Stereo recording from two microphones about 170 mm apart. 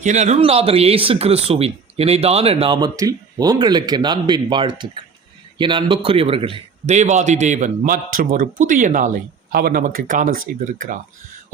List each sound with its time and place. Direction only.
0.0 s speech: 45° right (ahead or behind)
2.7 s a man's voice: 20° right (ahead or behind); by 10.4 s 55° right (ahead or behind)